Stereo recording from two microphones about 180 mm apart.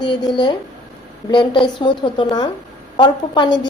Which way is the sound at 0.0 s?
25° left (ahead or behind).